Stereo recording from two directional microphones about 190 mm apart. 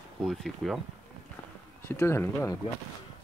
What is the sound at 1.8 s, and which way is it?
Speech, 15° left (ahead or behind).